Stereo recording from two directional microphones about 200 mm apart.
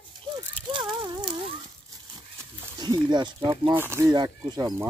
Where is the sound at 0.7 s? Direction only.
20° right (ahead or behind).